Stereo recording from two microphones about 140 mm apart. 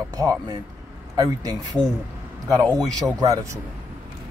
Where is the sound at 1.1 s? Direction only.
25° right (ahead or behind).